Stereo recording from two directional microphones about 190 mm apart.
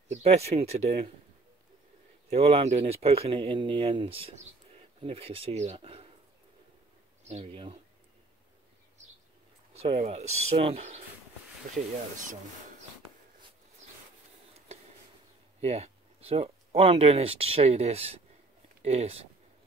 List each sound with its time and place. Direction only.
0.1 s speech: 35° right (ahead or behind)
2.2 s speech: 35° right (ahead or behind)
7.2 s speech: 35° right (ahead or behind)
9.8 s speech: 30° right (ahead or behind)
15.6 s speech: 35° right (ahead or behind)